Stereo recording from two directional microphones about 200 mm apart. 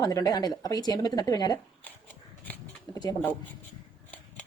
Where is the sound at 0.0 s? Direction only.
15° left (ahead or behind).